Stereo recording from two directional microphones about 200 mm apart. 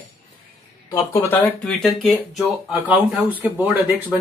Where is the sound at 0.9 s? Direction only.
10° left (ahead or behind).